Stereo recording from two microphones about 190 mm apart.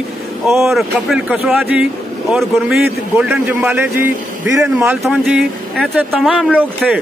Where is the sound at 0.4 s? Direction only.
Centre (ahead or behind).